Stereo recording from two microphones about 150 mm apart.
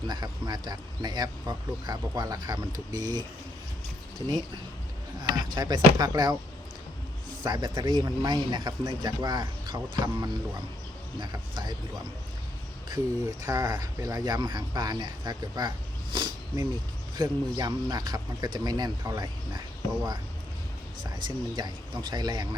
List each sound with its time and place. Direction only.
0.1 s speech: 25° right (ahead or behind)
5.3 s speech: 30° right (ahead or behind)
7.4 s speech: 30° right (ahead or behind)
13.4 s speech: 25° right (ahead or behind)
16.1 s wild animals: 30° right (ahead or behind)
17.2 s speech: 25° right (ahead or behind)